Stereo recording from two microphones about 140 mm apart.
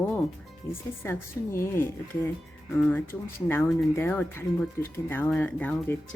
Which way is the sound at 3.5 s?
15° left (ahead or behind).